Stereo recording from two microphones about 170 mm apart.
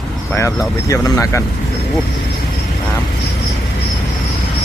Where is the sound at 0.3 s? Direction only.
15° left (ahead or behind).